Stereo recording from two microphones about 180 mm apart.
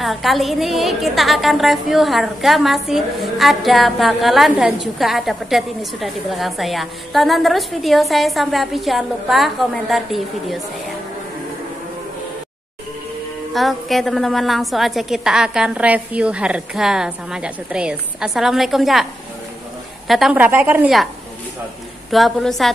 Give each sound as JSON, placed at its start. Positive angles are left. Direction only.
{"t": 0.0, "sound": "a woman's voice", "side_deg": 0}
{"t": 13.5, "sound": "a woman's voice", "side_deg": 0}
{"t": 20.1, "sound": "a woman's voice", "side_deg": 0}
{"t": 22.1, "sound": "a woman's voice", "side_deg": 0}